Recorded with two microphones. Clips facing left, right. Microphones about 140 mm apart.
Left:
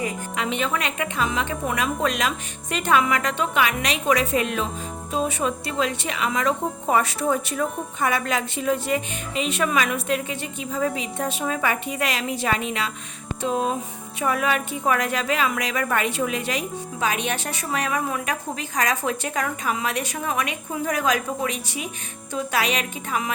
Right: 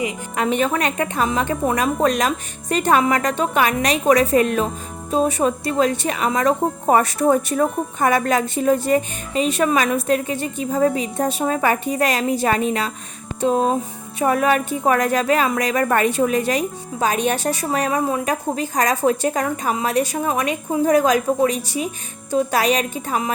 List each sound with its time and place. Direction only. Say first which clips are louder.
0.3 s speech: right 7 dB; 45° right (ahead or behind)